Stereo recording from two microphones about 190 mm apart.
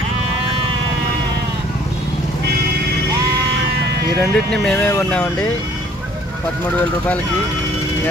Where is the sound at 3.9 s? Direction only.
60° right (ahead or behind).